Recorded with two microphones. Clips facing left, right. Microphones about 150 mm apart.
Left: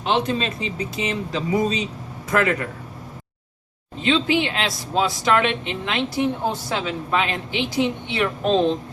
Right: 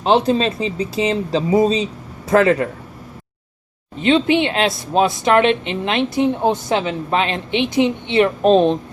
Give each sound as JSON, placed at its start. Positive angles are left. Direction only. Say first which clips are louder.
{"t": 0.0, "sound": "speech", "louder": "right 7 dB", "side_deg": -35}
{"t": 4.0, "sound": "speech", "louder": "right 5 dB", "side_deg": -20}